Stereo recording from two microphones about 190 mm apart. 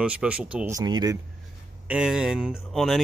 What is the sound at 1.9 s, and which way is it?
Speech, 5° right (ahead or behind).